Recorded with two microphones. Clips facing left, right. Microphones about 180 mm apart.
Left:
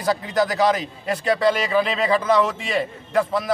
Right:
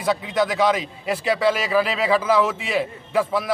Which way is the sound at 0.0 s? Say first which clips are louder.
Even; centre (ahead or behind).